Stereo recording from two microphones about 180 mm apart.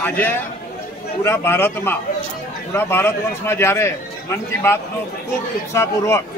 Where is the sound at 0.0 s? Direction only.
10° left (ahead or behind).